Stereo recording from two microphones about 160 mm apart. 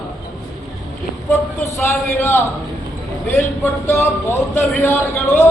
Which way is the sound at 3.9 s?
15° left (ahead or behind).